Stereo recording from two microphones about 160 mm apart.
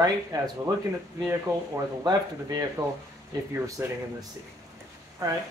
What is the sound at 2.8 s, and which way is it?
Speech, 25° right (ahead or behind).